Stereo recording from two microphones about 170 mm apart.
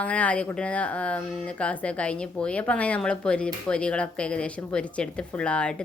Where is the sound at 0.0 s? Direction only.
10° left (ahead or behind).